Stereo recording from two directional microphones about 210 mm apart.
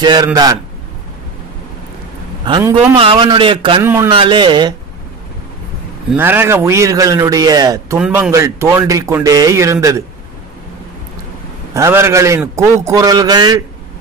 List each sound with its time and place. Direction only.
0.0 s a man's voice: 20° right (ahead or behind)
2.4 s a man's voice: 20° right (ahead or behind)
3.8 s a man's voice: 10° right (ahead or behind)
4.1 s a man's voice: 25° right (ahead or behind)
6.1 s a man's voice: 10° right (ahead or behind)
11.7 s a man's voice: 15° right (ahead or behind)